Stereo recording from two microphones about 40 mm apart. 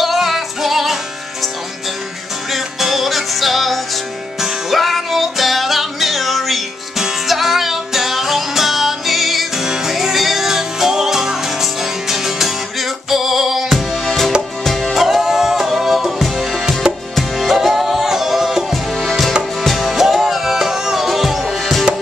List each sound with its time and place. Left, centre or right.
0.0 s music: centre
2.5 s music: centre
14.6 s music: centre
16.8 s music: centre
17.4 s music: centre
18.7 s music: centre